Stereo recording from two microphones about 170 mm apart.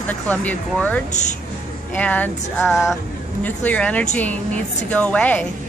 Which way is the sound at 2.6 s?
5° right (ahead or behind).